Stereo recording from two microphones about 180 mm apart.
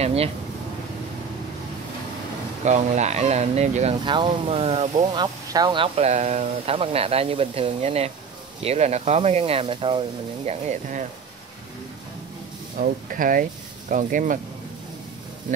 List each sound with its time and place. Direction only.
0.0 s speech: 35° right (ahead or behind)
2.6 s speech: 40° right (ahead or behind)
4.0 s speech: 25° right (ahead or behind); by 11.1 s 45° right (ahead or behind)
12.7 s speech: 50° right (ahead or behind)